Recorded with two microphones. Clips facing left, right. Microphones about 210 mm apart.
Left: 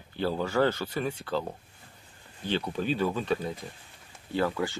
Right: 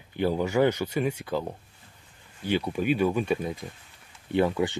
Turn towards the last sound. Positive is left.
turn(degrees=-20)  # may be behind; listen again after turning